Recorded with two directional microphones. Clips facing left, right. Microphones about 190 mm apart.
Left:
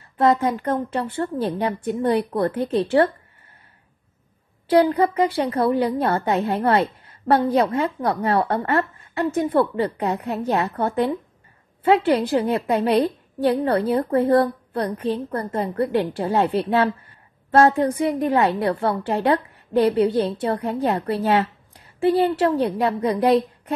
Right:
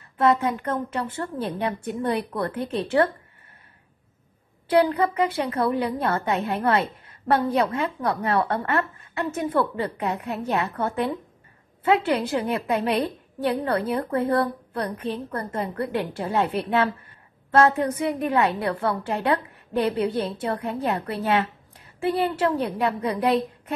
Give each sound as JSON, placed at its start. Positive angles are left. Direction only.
{"t": 0.2, "sound": "a woman's voice", "side_deg": 35}
{"t": 4.6, "sound": "a woman's voice", "side_deg": 35}